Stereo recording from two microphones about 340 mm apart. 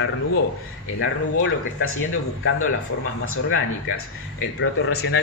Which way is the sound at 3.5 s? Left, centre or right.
Left.